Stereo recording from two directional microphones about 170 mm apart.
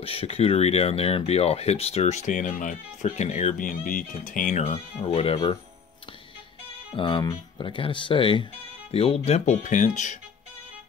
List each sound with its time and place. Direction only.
0.0 s speech: 35° left (ahead or behind)
7.0 s speech: 30° left (ahead or behind); by 10.1 s 45° left (ahead or behind)